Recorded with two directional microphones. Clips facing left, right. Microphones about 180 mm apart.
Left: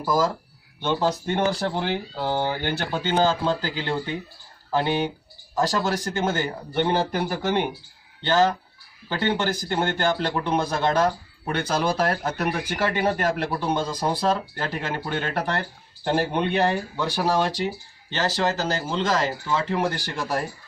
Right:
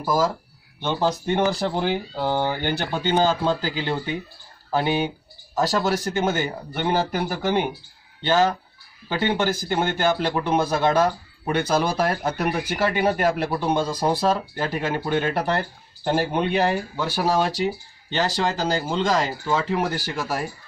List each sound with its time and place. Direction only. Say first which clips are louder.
0.0 s a man's voice: right 1 dB; 10° right (ahead or behind)
5.5 s a man's voice: right 2 dB; 10° right (ahead or behind)